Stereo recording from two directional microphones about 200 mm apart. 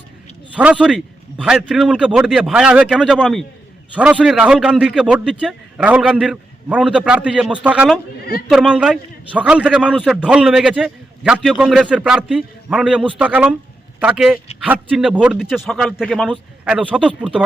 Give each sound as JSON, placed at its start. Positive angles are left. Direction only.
{"t": 0.5, "sound": "a man's voice", "side_deg": -5}
{"t": 8.2, "sound": "a man's voice", "side_deg": 50}
{"t": 8.4, "sound": "a man's voice", "side_deg": -5}